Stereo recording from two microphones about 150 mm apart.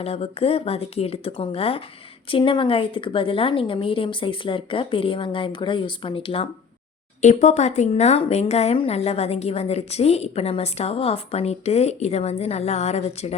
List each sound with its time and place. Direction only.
0.0 s a woman's voice: 40° left (ahead or behind)
7.2 s speech: 50° left (ahead or behind)